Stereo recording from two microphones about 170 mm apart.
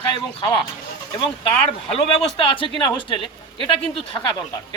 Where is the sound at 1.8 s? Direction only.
35° left (ahead or behind).